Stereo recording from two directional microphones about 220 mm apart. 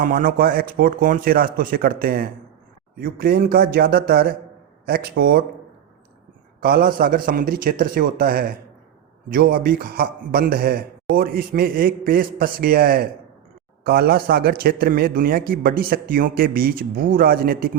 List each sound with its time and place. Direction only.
0.0 s a man's voice: 40° right (ahead or behind)
6.6 s a man's voice: 40° right (ahead or behind)